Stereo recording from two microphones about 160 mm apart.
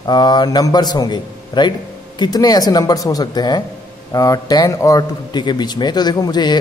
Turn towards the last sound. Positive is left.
turn(degrees=25)  # may be behind; listen again after turning